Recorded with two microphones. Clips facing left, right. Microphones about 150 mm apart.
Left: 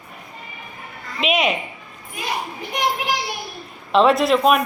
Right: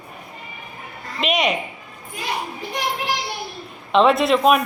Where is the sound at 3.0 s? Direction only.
15° left (ahead or behind).